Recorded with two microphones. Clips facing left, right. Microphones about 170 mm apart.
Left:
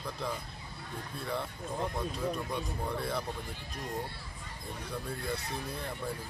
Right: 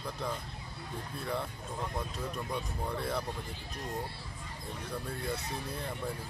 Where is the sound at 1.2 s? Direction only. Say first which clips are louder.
Even; centre (ahead or behind).